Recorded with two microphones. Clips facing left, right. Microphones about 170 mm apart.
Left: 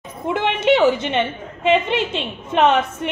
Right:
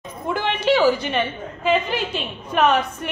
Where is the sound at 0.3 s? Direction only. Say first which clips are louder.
Left 3 dB; 20° left (ahead or behind).